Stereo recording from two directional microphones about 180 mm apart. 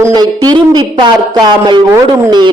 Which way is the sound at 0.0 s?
20° right (ahead or behind).